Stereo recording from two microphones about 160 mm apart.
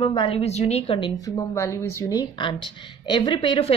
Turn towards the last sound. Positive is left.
turn(degrees=35)  # may be behind; listen again after turning